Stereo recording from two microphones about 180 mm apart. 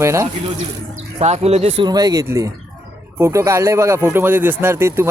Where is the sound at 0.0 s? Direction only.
15° right (ahead or behind).